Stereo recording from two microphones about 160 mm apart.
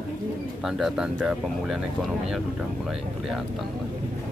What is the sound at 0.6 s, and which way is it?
Speech, 5° right (ahead or behind).